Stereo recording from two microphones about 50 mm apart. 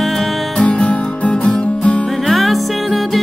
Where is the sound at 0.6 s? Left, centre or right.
Left.